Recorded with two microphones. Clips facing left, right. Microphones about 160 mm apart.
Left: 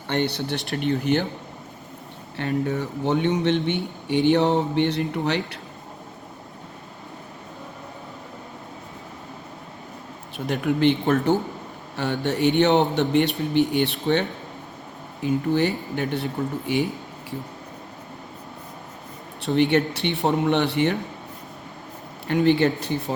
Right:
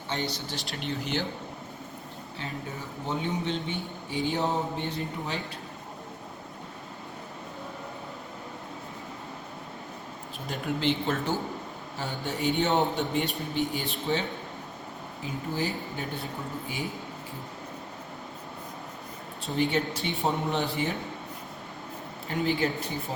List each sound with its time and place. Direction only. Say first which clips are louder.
0.1 s speech: left 9 dB; 65° left (ahead or behind)
2.3 s speech: left 13 dB; 70° left (ahead or behind)
10.3 s speech: left 9 dB; 70° left (ahead or behind)
11.9 s speech: left 9 dB; 70° left (ahead or behind)
19.4 s speech: left 8 dB; 70° left (ahead or behind)
22.3 s speech: left 9 dB; 75° left (ahead or behind)